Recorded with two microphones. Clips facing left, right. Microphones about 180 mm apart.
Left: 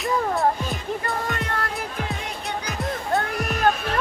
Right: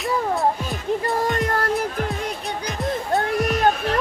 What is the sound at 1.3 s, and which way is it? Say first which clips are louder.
Music: right 6 dB; 40° right (ahead or behind).